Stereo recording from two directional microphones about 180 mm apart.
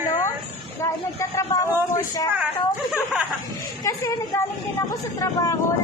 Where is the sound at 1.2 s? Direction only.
15° left (ahead or behind).